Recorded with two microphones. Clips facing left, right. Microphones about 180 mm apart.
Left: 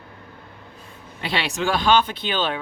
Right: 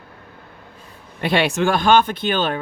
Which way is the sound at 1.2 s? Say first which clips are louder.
Right 7 dB; 55° right (ahead or behind).